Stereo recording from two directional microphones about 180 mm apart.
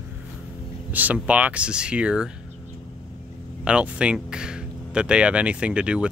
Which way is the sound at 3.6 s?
5° right (ahead or behind).